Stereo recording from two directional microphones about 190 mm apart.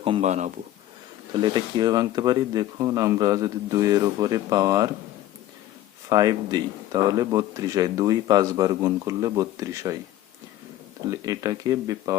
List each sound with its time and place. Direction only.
0.0 s speech: 30° right (ahead or behind)
1.3 s speech: 25° right (ahead or behind)
6.1 s speech: 20° right (ahead or behind)
11.1 s speech: 20° right (ahead or behind)